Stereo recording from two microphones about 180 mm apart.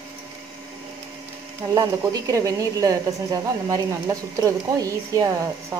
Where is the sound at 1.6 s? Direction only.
20° right (ahead or behind).